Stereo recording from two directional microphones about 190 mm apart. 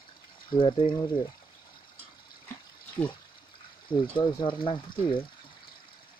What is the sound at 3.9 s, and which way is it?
Speech, 25° left (ahead or behind).